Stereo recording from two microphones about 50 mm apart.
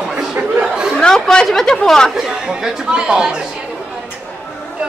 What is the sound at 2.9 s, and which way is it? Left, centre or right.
Speech, centre.